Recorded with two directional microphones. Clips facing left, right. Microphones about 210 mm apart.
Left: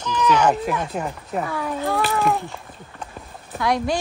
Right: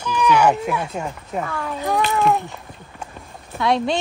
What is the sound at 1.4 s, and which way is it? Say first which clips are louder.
Speech: left 1 dB; 15° left (ahead or behind).